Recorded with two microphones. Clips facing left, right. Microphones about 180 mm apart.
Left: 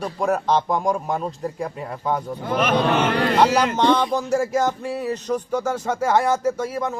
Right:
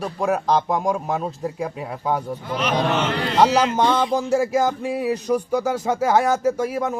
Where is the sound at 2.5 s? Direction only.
55° left (ahead or behind).